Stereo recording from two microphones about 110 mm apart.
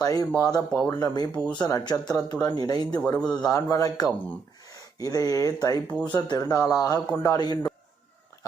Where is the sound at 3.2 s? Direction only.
10° left (ahead or behind).